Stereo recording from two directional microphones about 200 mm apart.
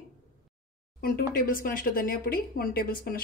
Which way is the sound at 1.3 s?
45° left (ahead or behind).